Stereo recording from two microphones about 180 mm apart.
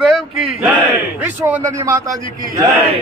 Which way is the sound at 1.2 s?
10° right (ahead or behind).